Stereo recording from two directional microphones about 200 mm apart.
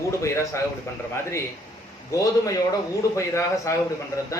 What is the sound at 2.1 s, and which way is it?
A man's voice, 15° left (ahead or behind).